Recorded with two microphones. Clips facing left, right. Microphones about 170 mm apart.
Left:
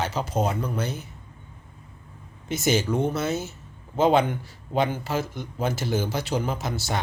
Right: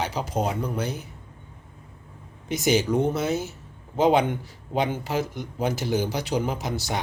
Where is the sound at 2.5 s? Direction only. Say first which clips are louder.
Right 2 dB; 15° right (ahead or behind).